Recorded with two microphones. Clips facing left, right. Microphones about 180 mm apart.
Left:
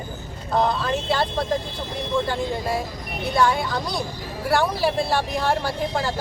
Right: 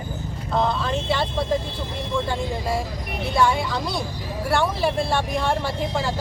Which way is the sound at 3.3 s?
Centre (ahead or behind).